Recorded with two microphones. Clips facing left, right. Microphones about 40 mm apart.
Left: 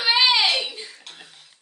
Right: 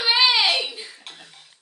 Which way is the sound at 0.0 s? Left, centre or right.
Centre.